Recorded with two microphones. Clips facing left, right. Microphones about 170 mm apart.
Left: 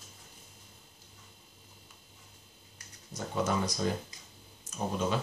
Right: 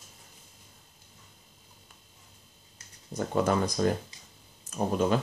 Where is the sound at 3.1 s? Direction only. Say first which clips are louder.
Right 5 dB; 55° right (ahead or behind).